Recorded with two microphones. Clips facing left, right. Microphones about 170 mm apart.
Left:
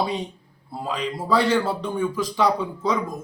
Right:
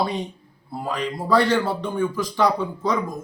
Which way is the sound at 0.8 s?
5° left (ahead or behind).